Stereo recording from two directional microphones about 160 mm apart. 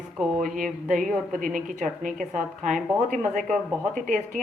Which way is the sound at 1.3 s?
55° right (ahead or behind).